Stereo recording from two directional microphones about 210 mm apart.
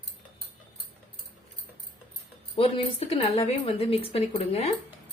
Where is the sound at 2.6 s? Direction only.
30° left (ahead or behind).